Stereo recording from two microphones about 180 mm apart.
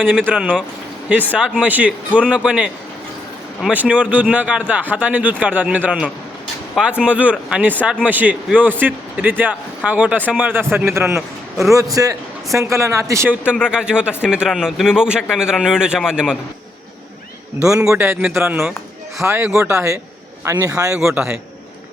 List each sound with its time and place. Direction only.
0.3 s a man's voice: 10° right (ahead or behind)
17.7 s speech: 10° right (ahead or behind)